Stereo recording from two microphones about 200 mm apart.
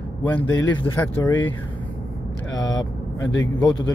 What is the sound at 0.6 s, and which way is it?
Speech, 70° left (ahead or behind).